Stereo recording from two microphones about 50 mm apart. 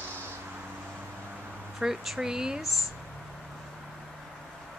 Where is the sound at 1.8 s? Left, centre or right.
Centre.